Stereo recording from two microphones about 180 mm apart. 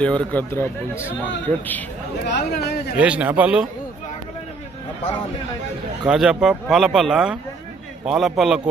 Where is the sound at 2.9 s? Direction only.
5° right (ahead or behind).